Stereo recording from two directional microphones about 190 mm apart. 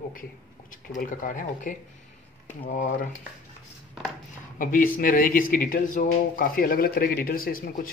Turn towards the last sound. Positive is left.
turn(degrees=50)  # may be behind; listen again after turning